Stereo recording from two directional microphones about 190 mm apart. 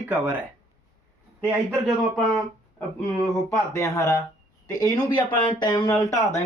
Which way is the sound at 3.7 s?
15° left (ahead or behind).